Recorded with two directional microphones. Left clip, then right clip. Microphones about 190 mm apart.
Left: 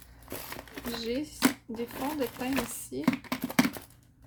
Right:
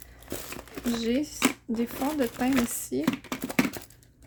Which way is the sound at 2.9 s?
50° right (ahead or behind).